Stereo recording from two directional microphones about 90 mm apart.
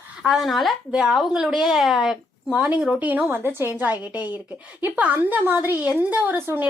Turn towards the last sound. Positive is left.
turn(degrees=-20)  # may be behind; listen again after turning